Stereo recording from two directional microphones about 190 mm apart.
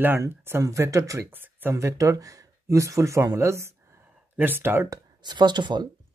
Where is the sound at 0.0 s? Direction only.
10° right (ahead or behind).